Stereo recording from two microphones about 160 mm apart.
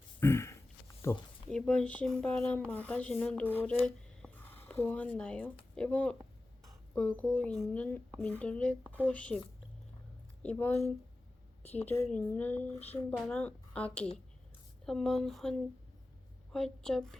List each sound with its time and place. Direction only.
0.2 s a sound: 15° left (ahead or behind)
1.1 s speech: 15° left (ahead or behind)
10.4 s speech: 10° left (ahead or behind)
11.6 s a woman's voice: 40° left (ahead or behind)
12.0 s a woman's voice: 10° left (ahead or behind)